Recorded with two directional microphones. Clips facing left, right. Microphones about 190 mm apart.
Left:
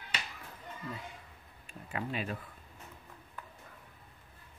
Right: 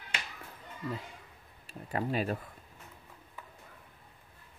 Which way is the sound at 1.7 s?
40° right (ahead or behind).